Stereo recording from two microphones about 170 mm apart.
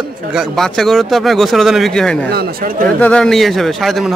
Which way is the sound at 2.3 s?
65° right (ahead or behind).